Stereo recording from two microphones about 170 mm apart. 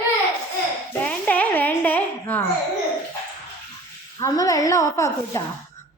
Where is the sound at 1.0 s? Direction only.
10° left (ahead or behind).